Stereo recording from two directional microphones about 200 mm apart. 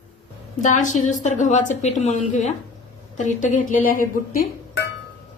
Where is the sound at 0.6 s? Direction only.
35° left (ahead or behind).